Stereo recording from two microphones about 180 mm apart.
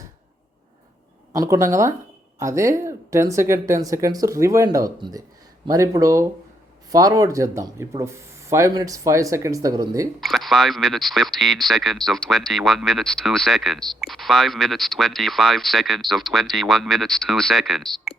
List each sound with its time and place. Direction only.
1.3 s speech: 15° right (ahead or behind)
10.2 s speech: centre (ahead or behind)